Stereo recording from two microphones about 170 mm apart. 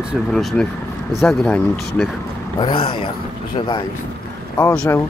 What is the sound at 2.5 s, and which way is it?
Speech, 30° left (ahead or behind).